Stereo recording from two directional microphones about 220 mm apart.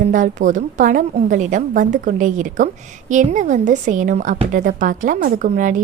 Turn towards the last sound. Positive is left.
turn(degrees=-35)  # may be behind; listen again after turning